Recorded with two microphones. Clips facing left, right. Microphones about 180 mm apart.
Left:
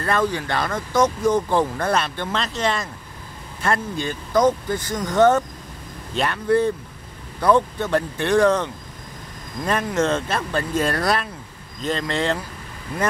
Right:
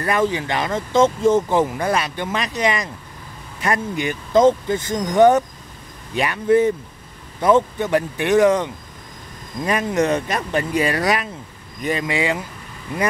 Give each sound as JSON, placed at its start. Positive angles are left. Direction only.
{"t": 0.0, "sound": "speech", "side_deg": -15}
{"t": 9.8, "sound": "speech", "side_deg": -15}